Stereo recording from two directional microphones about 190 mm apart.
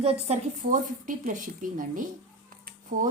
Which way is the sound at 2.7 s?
45° right (ahead or behind).